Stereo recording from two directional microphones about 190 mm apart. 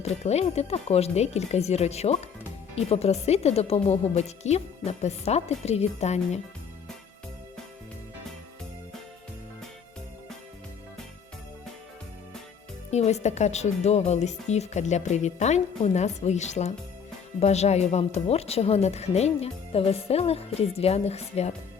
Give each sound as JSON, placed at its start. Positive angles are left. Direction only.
{"t": 0.0, "sound": "a woman's voice", "side_deg": 35}
{"t": 12.9, "sound": "a woman's voice", "side_deg": 35}